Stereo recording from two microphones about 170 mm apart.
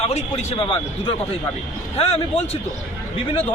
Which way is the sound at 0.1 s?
40° left (ahead or behind).